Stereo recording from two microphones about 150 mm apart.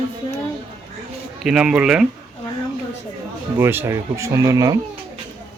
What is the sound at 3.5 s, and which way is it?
Speech, 15° right (ahead or behind).